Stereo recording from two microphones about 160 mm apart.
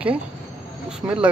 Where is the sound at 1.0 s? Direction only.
25° right (ahead or behind).